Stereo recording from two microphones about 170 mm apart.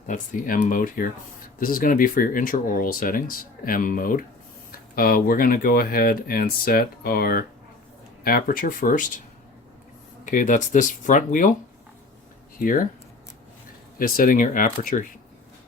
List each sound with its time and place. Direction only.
0.1 s speech: 50° left (ahead or behind)
10.2 s speech: 50° left (ahead or behind)
12.5 s speech: 55° left (ahead or behind)
14.0 s speech: 55° left (ahead or behind)